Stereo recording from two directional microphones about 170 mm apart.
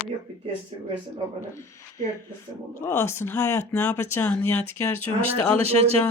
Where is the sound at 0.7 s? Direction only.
35° right (ahead or behind).